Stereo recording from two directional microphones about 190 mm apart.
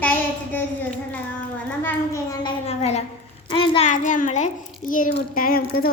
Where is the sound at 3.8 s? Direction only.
40° left (ahead or behind).